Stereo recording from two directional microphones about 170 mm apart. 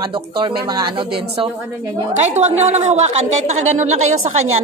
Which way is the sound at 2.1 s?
40° right (ahead or behind).